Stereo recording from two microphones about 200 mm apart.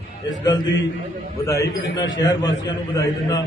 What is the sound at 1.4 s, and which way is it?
A man's voice, 15° left (ahead or behind).